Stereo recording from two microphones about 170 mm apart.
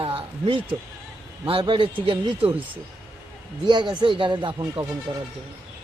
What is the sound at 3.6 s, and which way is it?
Speech, 25° right (ahead or behind).